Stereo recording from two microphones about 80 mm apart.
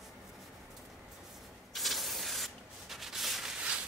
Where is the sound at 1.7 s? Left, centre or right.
Centre.